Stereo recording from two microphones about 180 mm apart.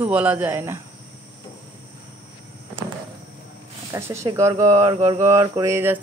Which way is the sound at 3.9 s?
15° right (ahead or behind).